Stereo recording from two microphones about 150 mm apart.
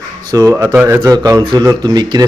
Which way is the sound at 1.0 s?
25° right (ahead or behind).